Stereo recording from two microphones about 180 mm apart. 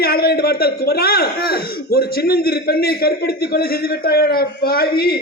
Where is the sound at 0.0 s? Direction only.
60° left (ahead or behind).